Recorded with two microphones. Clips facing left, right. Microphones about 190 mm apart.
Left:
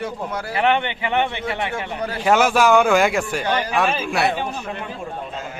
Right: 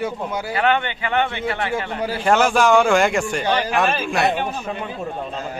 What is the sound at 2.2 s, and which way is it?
A man's voice, 5° left (ahead or behind).